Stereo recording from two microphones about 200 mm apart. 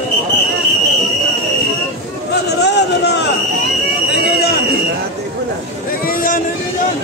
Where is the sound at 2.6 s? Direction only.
55° left (ahead or behind).